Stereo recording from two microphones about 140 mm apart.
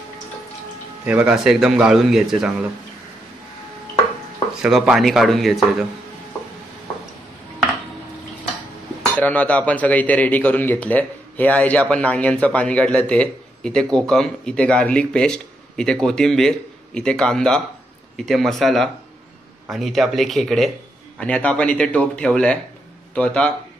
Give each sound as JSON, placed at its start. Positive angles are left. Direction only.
{"t": 1.0, "sound": "a man's voice", "side_deg": -10}
{"t": 4.6, "sound": "a man's voice", "side_deg": -5}
{"t": 9.1, "sound": "a man's voice", "side_deg": 10}